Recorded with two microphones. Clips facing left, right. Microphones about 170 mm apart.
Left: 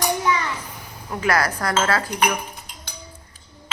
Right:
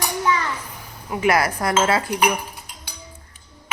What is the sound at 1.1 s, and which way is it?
Speech, 20° right (ahead or behind).